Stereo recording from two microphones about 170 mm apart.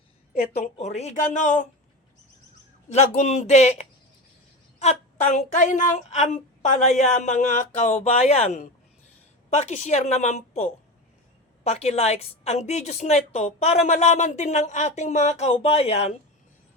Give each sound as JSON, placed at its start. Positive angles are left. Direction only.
{"t": 0.3, "sound": "speech", "side_deg": 65}
{"t": 0.8, "sound": "speech", "side_deg": 40}
{"t": 2.9, "sound": "speech", "side_deg": 40}